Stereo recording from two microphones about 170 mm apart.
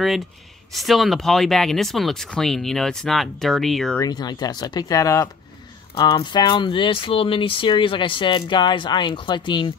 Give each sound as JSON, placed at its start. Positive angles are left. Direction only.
{"t": 0.7, "sound": "speech", "side_deg": 0}
{"t": 4.0, "sound": "speech", "side_deg": 25}